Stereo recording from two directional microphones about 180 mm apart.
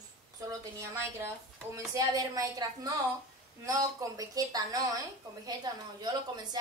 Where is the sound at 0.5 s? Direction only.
15° right (ahead or behind).